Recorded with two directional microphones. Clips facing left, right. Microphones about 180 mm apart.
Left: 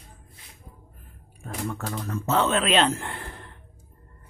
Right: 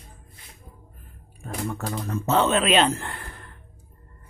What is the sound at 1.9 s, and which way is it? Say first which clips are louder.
Speech: right 3 dB; 25° right (ahead or behind).